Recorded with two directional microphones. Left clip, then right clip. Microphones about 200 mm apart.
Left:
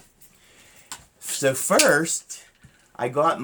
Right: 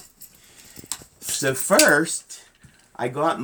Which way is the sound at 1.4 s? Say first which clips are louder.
Right 1 dB; 20° left (ahead or behind).